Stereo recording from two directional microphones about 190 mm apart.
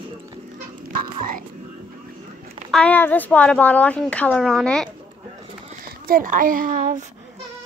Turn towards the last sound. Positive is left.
turn(degrees=-45)  # may be behind; listen again after turning